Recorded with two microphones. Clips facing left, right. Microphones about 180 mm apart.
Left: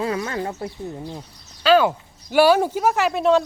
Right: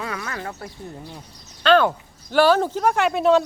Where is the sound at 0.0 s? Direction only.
25° left (ahead or behind).